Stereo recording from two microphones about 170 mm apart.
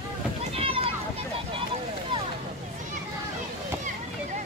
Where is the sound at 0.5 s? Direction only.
35° right (ahead or behind).